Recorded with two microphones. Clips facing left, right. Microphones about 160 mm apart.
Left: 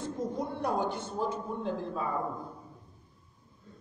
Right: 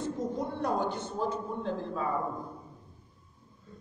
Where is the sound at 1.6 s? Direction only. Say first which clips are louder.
Left 1 dB; 15° left (ahead or behind).